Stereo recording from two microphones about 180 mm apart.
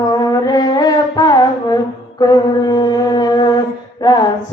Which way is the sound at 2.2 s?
20° left (ahead or behind).